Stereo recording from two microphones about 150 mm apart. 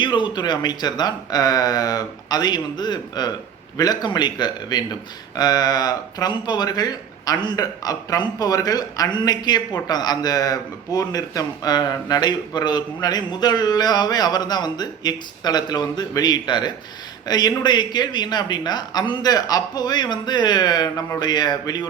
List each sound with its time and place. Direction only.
0.0 s a man's voice: 30° left (ahead or behind)